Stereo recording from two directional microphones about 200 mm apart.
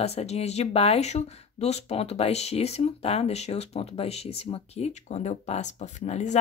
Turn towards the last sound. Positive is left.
turn(degrees=35)  # may be behind; listen again after turning